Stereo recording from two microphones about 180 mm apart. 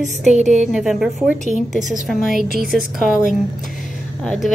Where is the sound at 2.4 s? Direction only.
55° right (ahead or behind).